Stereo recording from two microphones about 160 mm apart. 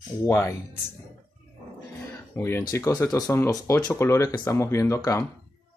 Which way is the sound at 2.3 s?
15° left (ahead or behind).